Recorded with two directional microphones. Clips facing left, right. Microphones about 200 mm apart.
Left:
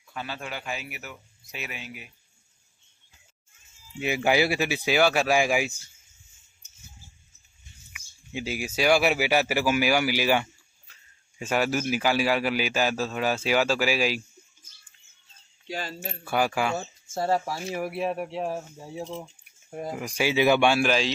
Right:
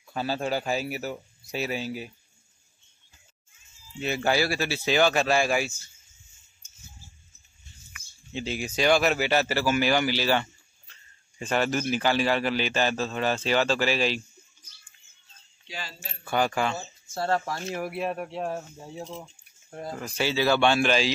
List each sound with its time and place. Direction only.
0.1 s speech: 35° right (ahead or behind)
4.0 s speech: 15° left (ahead or behind)
7.9 s speech: 10° left (ahead or behind)
15.6 s speech: 45° left (ahead or behind)
16.3 s speech: 10° left (ahead or behind)